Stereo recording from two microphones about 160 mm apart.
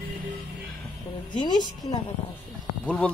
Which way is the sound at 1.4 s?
25° left (ahead or behind).